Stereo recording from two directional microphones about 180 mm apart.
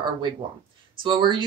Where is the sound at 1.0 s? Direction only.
25° right (ahead or behind).